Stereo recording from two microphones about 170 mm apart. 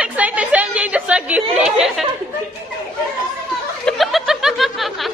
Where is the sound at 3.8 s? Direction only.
Centre (ahead or behind).